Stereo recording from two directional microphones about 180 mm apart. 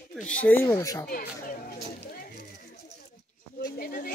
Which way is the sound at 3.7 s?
55° left (ahead or behind).